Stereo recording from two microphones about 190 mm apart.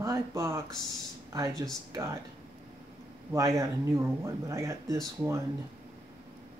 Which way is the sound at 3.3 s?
15° right (ahead or behind).